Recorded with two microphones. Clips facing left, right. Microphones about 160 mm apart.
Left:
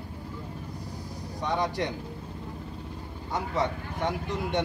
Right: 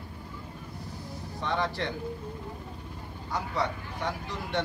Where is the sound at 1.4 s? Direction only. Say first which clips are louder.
Left 2 dB; 15° left (ahead or behind).